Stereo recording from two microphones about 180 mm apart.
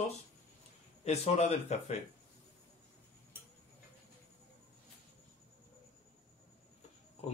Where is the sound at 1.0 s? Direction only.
35° left (ahead or behind).